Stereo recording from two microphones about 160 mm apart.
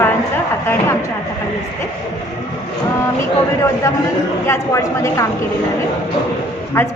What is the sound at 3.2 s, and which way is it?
A woman's voice, 20° left (ahead or behind).